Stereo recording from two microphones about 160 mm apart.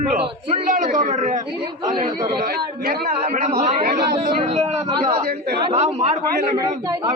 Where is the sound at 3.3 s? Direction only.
50° right (ahead or behind).